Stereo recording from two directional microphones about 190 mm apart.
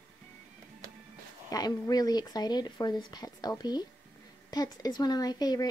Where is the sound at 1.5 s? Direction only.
20° left (ahead or behind).